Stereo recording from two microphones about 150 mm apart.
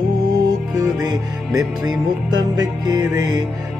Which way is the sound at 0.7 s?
25° right (ahead or behind).